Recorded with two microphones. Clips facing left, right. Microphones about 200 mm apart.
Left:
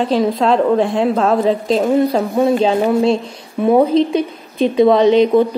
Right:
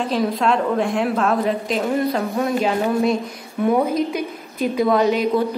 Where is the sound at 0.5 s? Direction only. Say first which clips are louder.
Left 6 dB; 30° left (ahead or behind).